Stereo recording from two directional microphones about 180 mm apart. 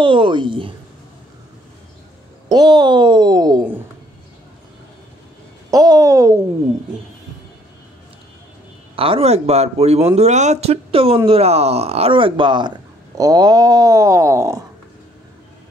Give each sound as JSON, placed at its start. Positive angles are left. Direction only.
{"t": 0.0, "sound": "speech", "side_deg": -30}
{"t": 2.5, "sound": "speech", "side_deg": -25}
{"t": 5.7, "sound": "speech", "side_deg": -20}
{"t": 8.9, "sound": "speech", "side_deg": -30}